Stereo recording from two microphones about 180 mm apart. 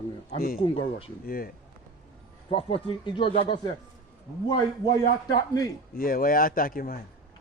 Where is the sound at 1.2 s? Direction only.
55° left (ahead or behind).